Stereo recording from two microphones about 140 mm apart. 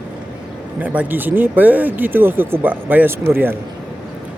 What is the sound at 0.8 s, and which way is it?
Speech, 10° right (ahead or behind).